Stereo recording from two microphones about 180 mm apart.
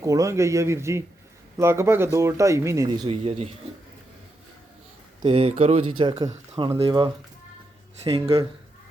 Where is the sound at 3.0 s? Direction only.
35° right (ahead or behind).